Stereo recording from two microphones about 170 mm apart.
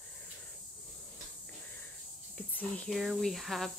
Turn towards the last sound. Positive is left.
turn(degrees=0)  # may be behind; listen again after turning